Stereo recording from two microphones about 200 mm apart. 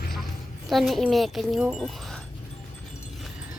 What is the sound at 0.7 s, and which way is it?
Speech, centre (ahead or behind).